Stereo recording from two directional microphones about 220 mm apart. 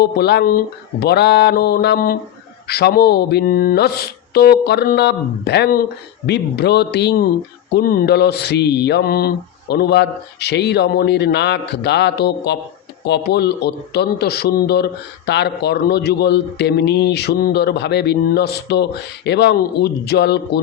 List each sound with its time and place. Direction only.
0.0 s a man's voice: 50° left (ahead or behind)